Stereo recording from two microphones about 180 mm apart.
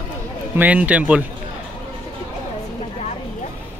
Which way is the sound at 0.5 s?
10° right (ahead or behind).